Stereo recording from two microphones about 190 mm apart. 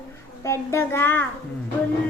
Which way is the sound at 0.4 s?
15° left (ahead or behind).